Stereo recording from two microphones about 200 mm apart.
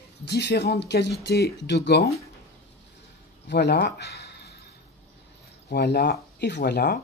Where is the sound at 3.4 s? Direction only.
55° left (ahead or behind).